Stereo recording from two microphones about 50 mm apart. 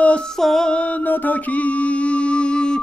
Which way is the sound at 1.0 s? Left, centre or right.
Left.